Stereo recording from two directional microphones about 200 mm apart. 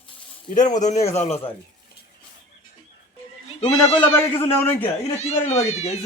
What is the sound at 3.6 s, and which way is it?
Speech, 30° left (ahead or behind).